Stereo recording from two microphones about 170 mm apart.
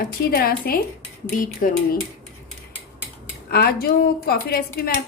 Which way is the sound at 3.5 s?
65° left (ahead or behind).